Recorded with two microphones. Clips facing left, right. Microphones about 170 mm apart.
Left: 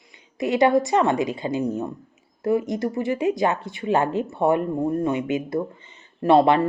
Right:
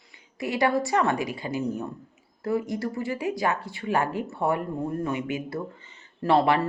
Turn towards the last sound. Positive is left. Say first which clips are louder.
# left 5 dB
turn(degrees=20)  # may be behind; listen again after turning